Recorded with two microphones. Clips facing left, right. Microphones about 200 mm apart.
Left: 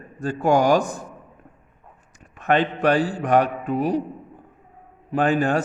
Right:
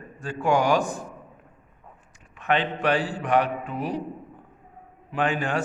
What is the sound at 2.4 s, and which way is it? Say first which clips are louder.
A man's voice: left 4 dB; 45° left (ahead or behind).